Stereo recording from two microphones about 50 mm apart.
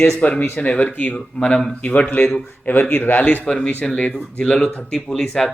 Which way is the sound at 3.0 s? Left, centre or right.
Left.